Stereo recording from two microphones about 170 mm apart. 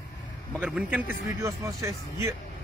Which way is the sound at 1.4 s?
20° right (ahead or behind).